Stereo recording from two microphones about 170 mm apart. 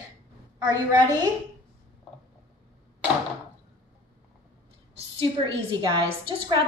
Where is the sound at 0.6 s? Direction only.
20° right (ahead or behind).